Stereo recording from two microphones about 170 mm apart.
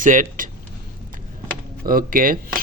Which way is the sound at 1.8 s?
55° right (ahead or behind).